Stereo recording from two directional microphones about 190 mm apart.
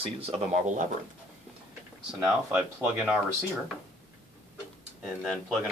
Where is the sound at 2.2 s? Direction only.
10° right (ahead or behind).